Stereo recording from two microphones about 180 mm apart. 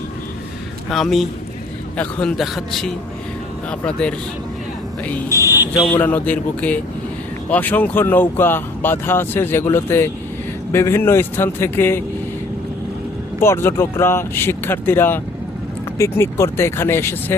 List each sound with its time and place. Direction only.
0.9 s speech: centre (ahead or behind)
5.3 s speech: 15° right (ahead or behind)
5.7 s speech: 15° left (ahead or behind)
13.4 s speech: 15° left (ahead or behind)